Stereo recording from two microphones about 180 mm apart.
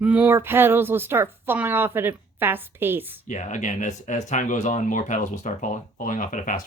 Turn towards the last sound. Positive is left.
turn(degrees=45)  # may be behind; listen again after turning